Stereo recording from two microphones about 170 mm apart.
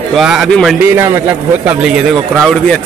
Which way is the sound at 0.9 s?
15° right (ahead or behind).